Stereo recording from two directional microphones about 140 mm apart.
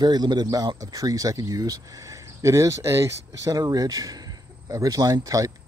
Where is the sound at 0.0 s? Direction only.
30° right (ahead or behind).